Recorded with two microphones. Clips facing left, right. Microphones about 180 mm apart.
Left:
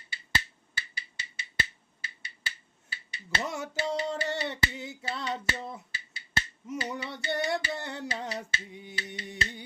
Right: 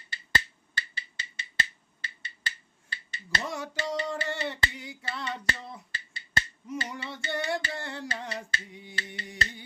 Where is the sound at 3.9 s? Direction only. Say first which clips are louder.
Left 1 dB; 20° left (ahead or behind).